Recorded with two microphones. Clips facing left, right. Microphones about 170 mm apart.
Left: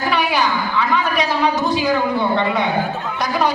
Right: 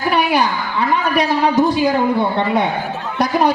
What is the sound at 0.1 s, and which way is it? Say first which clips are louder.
A woman's voice: right 3 dB; 55° right (ahead or behind).